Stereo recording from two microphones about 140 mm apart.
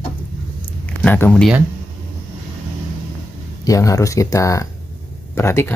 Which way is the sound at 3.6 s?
25° left (ahead or behind).